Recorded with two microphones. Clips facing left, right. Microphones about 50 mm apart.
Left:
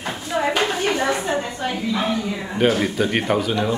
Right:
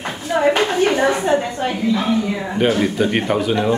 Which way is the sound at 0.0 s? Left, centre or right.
Right.